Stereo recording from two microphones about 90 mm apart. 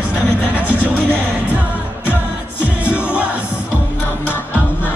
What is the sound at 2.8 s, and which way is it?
Music, 15° right (ahead or behind).